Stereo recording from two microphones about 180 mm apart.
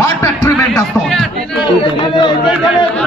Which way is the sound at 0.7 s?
Centre (ahead or behind).